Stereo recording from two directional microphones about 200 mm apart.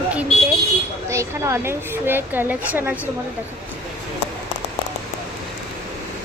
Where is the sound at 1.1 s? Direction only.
15° right (ahead or behind).